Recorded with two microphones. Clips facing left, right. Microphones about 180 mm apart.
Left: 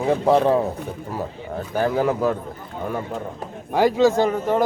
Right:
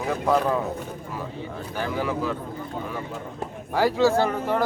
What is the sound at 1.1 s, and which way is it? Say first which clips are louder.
A man's voice: left 5 dB; 45° left (ahead or behind).